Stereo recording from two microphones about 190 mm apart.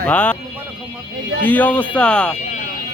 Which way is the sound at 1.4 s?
10° left (ahead or behind).